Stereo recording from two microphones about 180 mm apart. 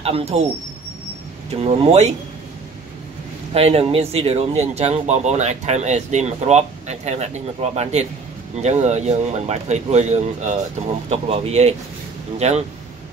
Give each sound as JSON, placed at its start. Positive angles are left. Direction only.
{"t": 0.0, "sound": "speech", "side_deg": -35}
{"t": 1.5, "sound": "speech", "side_deg": -35}
{"t": 3.5, "sound": "speech", "side_deg": -35}